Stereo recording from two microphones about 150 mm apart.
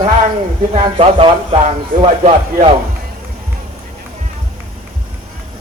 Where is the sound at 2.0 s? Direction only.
45° right (ahead or behind).